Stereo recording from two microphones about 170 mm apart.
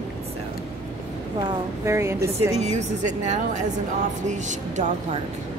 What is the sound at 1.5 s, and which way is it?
A woman's voice, 15° right (ahead or behind).